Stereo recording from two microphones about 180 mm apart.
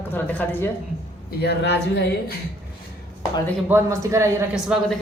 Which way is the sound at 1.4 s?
65° left (ahead or behind).